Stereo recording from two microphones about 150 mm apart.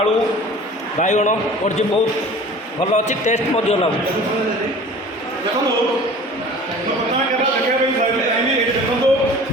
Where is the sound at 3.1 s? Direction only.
50° left (ahead or behind).